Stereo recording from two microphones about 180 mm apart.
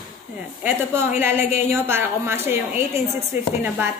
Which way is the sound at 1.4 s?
40° left (ahead or behind).